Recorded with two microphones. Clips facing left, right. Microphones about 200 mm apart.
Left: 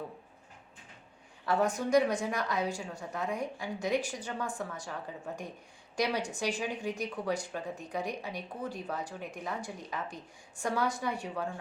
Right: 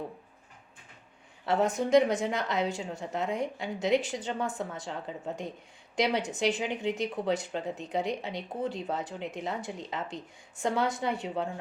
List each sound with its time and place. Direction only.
1.5 s speech: 20° right (ahead or behind)